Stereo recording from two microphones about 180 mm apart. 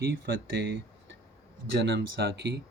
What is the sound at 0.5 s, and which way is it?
Speech, 70° right (ahead or behind).